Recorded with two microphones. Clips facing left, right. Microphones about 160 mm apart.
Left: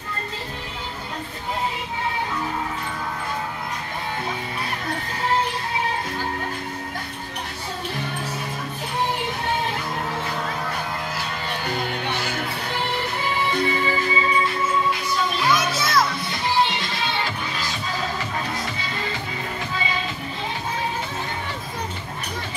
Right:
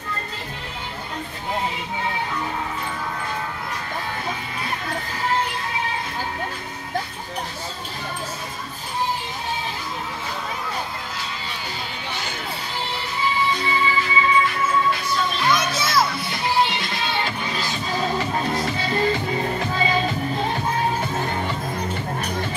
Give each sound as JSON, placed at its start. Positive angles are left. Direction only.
{"t": 13.2, "sound": "music", "side_deg": 55}
{"t": 15.4, "sound": "children playing", "side_deg": 5}
{"t": 19.3, "sound": "music", "side_deg": -40}